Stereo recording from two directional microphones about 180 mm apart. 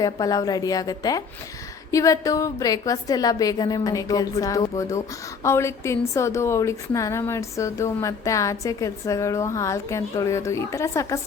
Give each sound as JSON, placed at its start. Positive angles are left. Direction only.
{"t": 0.0, "sound": "a woman's voice", "side_deg": 20}